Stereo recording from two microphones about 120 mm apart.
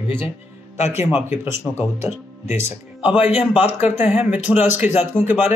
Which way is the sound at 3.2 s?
60° left (ahead or behind).